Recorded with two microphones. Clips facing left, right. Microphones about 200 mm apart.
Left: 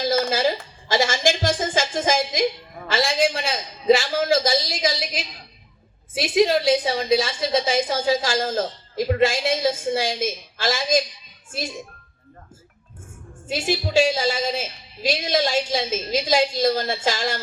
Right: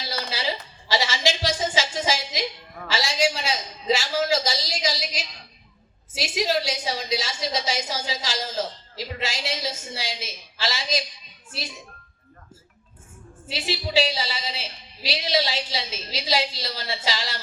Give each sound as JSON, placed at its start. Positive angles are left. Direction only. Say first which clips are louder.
{"t": 0.0, "sound": "a sound", "louder": "left 10 dB", "side_deg": 50}
{"t": 6.1, "sound": "a woman's voice", "louder": "left 7 dB", "side_deg": 55}
{"t": 13.5, "sound": "a woman's voice", "louder": "left 4 dB", "side_deg": 50}